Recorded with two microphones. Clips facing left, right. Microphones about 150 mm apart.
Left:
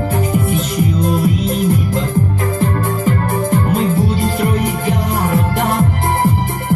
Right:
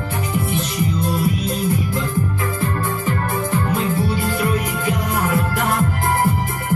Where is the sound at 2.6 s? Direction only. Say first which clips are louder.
Left 6 dB; 40° left (ahead or behind).